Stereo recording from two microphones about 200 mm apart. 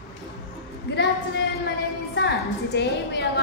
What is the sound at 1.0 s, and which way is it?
A woman's voice, 60° left (ahead or behind).